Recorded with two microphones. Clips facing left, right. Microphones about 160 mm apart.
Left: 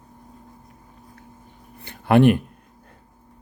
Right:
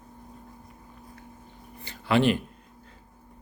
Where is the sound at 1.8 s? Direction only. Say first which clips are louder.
Left 7 dB; 55° left (ahead or behind).